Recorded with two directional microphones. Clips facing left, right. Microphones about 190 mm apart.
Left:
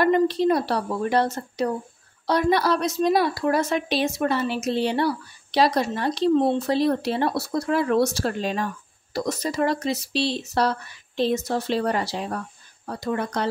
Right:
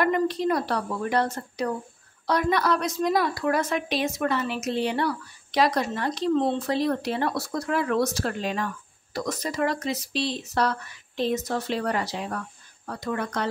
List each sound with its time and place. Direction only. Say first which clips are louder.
0.0 s a woman's voice: left 4 dB; 30° left (ahead or behind)
6.3 s speech: left 3 dB; 15° left (ahead or behind)
6.7 s a woman's voice: left 3 dB; 30° left (ahead or behind)